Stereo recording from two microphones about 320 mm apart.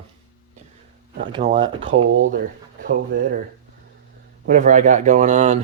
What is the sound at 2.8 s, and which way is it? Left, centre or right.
Speech, right.